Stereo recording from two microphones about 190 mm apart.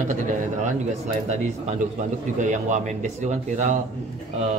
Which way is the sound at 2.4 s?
40° right (ahead or behind).